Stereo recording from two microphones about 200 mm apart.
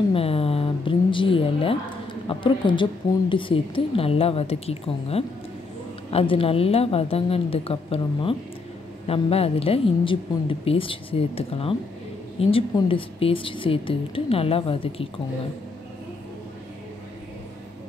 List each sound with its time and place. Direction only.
0.1 s a woman's voice: 30° left (ahead or behind)